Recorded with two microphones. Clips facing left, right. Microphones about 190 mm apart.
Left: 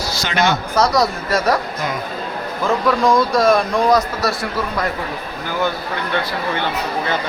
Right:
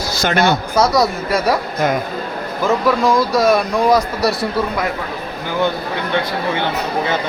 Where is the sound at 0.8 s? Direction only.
5° right (ahead or behind).